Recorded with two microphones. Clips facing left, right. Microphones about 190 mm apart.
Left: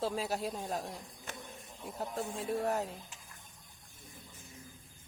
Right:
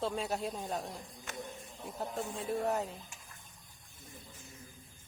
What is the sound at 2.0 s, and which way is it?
Speech, centre (ahead or behind).